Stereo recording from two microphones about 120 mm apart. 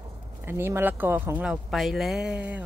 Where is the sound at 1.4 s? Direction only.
5° right (ahead or behind).